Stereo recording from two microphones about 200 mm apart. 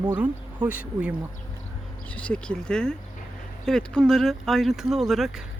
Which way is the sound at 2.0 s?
5° left (ahead or behind).